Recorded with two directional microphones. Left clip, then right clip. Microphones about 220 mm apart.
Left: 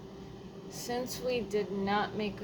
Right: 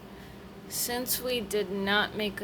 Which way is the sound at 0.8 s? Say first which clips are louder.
Right 2 dB; 30° right (ahead or behind).